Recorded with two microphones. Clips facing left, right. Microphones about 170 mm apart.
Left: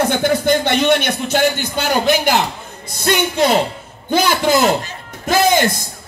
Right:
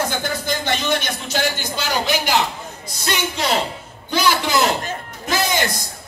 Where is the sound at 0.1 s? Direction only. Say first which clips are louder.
Left 9 dB; 65° left (ahead or behind).